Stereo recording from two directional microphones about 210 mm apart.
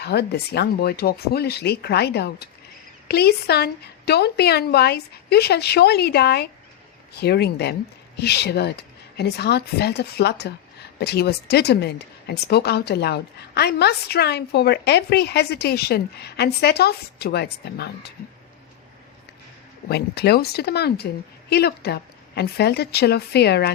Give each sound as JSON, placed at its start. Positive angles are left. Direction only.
{"t": 0.0, "sound": "speech", "side_deg": 50}
{"t": 19.9, "sound": "speech", "side_deg": 50}